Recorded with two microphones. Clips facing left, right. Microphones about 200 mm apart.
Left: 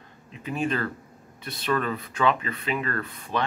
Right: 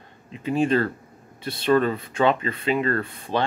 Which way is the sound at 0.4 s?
30° right (ahead or behind).